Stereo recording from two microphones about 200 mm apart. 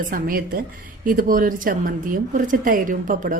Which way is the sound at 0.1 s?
45° right (ahead or behind).